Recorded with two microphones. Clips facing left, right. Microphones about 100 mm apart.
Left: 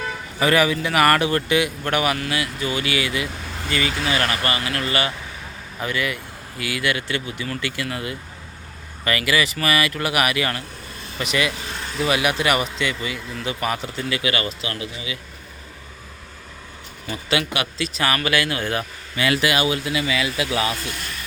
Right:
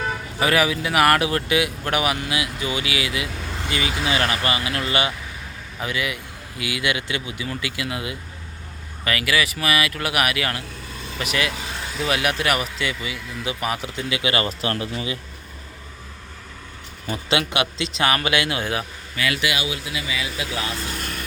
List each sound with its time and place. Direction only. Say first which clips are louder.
0.3 s speech: left 2 dB; 5° right (ahead or behind); by 14.5 s 30° right (ahead or behind)
14.6 s speech: right 4 dB; 45° right (ahead or behind)
17.1 s speech: right 1 dB; 25° right (ahead or behind)
19.1 s speech: left 4 dB; 30° left (ahead or behind); by 20.7 s 85° left